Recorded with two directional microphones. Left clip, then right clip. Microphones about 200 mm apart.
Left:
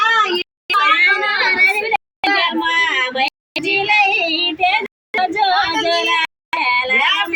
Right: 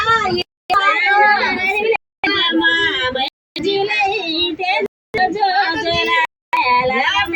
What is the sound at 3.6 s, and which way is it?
Child singing, 60° left (ahead or behind).